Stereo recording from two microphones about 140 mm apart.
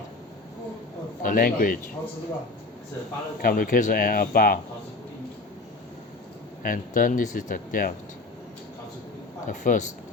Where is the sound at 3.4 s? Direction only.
85° left.